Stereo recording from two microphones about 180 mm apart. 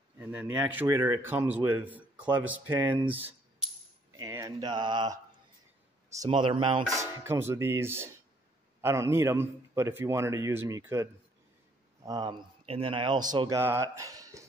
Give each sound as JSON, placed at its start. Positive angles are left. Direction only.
{"t": 0.2, "sound": "a man's voice", "side_deg": -10}
{"t": 6.9, "sound": "a man's voice", "side_deg": -15}